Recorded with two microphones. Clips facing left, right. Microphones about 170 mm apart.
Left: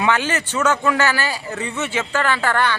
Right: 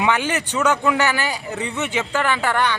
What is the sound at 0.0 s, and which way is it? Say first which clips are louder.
Speech: even; 15° right (ahead or behind).